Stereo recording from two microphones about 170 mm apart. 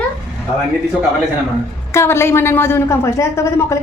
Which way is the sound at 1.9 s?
15° left (ahead or behind).